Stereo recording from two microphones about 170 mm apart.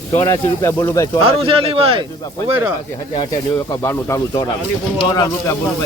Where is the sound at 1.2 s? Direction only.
30° right (ahead or behind).